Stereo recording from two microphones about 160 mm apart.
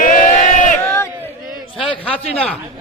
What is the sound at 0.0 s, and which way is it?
Crowd, 55° left (ahead or behind).